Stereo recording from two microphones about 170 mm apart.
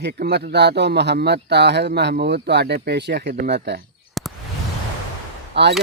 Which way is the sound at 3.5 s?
75° right (ahead or behind).